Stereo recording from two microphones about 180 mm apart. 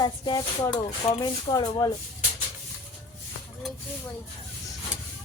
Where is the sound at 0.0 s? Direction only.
25° left (ahead or behind).